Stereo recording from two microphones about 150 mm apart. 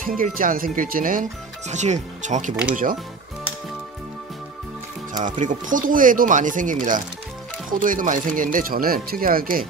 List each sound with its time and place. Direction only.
0.0 s speech: 70° right (ahead or behind)
1.7 s speech: 50° right (ahead or behind)
2.7 s speech: 65° right (ahead or behind)
5.1 s speech: 60° right (ahead or behind)